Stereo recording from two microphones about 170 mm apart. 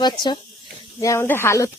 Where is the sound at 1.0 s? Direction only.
15° left (ahead or behind).